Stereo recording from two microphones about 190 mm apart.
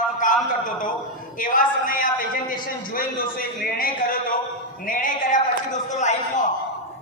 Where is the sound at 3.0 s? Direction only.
50° left (ahead or behind).